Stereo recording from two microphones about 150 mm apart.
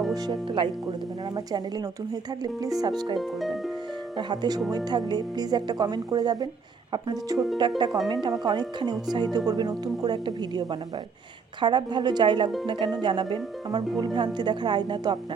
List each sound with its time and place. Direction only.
0.1 s speech: 30° right (ahead or behind)
2.4 s speech: 25° right (ahead or behind)
4.2 s speech: 25° right (ahead or behind)